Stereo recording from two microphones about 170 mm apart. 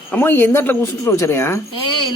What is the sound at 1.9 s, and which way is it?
Speech, 25° left (ahead or behind).